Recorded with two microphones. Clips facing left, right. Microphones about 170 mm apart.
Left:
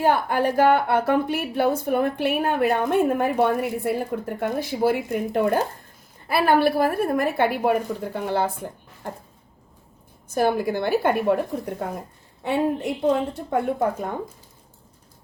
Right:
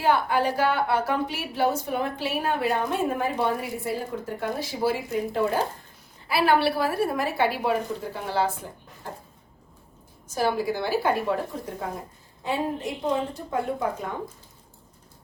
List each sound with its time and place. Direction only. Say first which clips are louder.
0.0 s a woman's voice: left 2 dB; 50° left (ahead or behind)
10.2 s a woman's voice: left 3 dB; 55° left (ahead or behind)